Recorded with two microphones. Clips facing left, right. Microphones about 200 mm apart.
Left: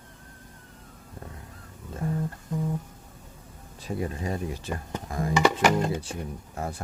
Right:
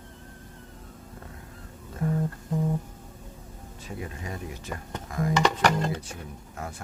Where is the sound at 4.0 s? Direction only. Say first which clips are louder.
Left 6 dB; 35° left (ahead or behind).